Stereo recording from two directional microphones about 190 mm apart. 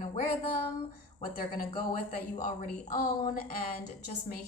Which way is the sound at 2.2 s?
40° left (ahead or behind).